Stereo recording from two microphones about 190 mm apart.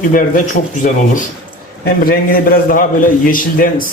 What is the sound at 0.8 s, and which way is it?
Speech, 45° left (ahead or behind).